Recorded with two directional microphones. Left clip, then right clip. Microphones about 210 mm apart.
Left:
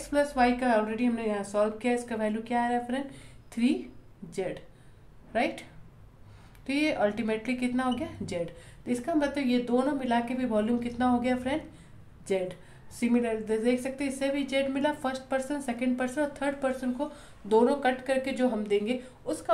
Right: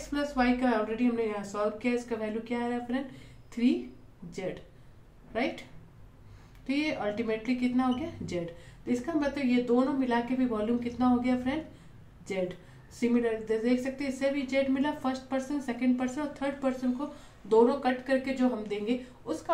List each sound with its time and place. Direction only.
0.1 s a woman's voice: 50° left (ahead or behind)
5.3 s a woman's voice: 40° left (ahead or behind)
12.9 s speech: 45° left (ahead or behind)